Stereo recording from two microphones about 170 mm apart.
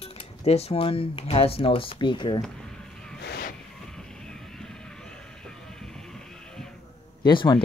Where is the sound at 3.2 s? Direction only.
70° left (ahead or behind).